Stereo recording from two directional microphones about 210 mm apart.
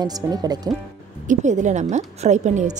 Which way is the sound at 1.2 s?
35° right (ahead or behind).